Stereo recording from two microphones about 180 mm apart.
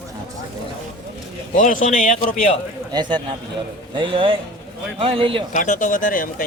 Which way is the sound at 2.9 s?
25° right (ahead or behind).